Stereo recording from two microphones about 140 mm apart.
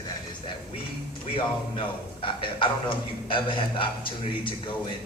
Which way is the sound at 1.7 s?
40° left (ahead or behind).